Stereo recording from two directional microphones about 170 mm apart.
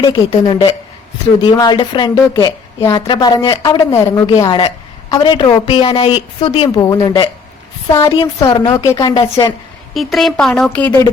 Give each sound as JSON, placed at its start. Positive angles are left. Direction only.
{"t": 0.0, "sound": "a woman's voice", "side_deg": 25}
{"t": 8.4, "sound": "a woman's voice", "side_deg": 20}
{"t": 9.9, "sound": "a woman's voice", "side_deg": 0}